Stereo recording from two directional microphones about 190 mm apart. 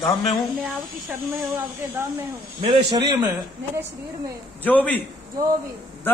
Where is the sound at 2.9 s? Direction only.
25° right (ahead or behind).